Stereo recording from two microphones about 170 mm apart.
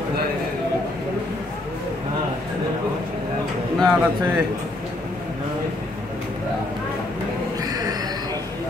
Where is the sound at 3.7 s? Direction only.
Centre (ahead or behind).